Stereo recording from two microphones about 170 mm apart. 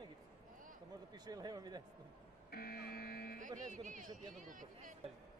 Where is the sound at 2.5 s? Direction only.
65° left (ahead or behind).